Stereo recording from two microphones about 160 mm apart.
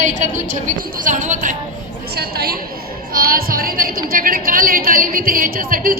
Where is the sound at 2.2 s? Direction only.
70° right (ahead or behind).